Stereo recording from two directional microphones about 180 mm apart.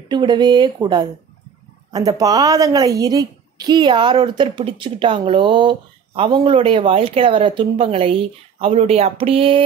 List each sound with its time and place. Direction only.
0.1 s speech: 25° right (ahead or behind)